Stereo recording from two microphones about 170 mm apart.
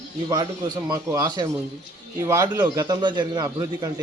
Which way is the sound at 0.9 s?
20° right (ahead or behind).